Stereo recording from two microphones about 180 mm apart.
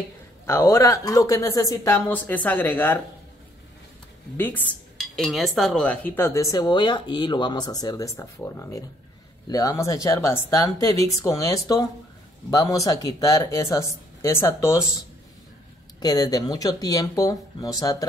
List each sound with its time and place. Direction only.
0.5 s cutlery: 15° left (ahead or behind)
4.4 s cutlery: 10° left (ahead or behind)
9.5 s speech: 20° left (ahead or behind)